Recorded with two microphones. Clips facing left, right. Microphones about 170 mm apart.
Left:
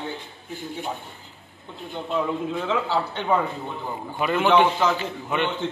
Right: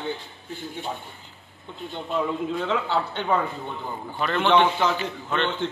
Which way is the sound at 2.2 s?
5° left (ahead or behind).